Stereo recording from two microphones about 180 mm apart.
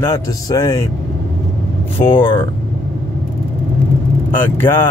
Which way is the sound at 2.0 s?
15° left (ahead or behind).